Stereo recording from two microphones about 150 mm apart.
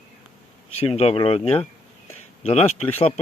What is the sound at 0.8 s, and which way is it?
Speech, 40° left (ahead or behind).